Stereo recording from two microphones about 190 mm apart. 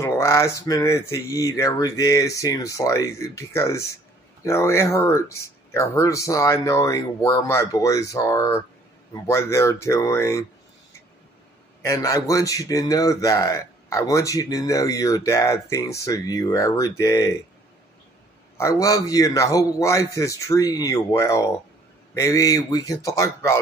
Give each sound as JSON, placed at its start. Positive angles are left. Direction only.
{"t": 0.0, "sound": "a man's voice", "side_deg": 15}
{"t": 11.8, "sound": "a man's voice", "side_deg": 15}
{"t": 18.6, "sound": "a man's voice", "side_deg": 15}